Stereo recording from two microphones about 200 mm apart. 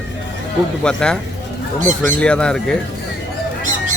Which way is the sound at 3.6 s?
40° right (ahead or behind).